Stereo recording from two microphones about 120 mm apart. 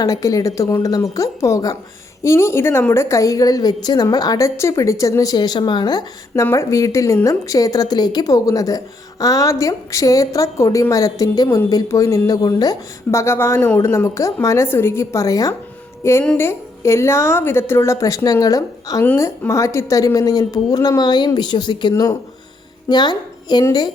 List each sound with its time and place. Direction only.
0.0 s a woman's voice: 30° left (ahead or behind)